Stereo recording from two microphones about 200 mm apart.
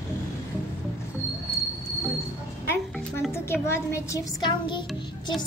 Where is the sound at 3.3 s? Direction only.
15° left (ahead or behind).